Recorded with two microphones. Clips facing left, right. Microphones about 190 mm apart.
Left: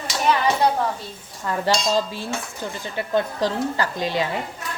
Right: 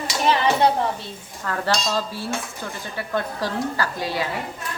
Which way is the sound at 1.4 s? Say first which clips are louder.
Left 2 dB; 15° left (ahead or behind).